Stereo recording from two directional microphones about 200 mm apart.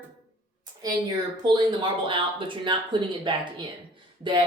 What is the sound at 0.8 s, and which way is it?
Speech, 20° right (ahead or behind).